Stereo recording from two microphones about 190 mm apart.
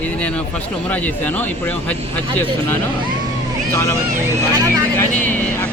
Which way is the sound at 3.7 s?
15° left (ahead or behind).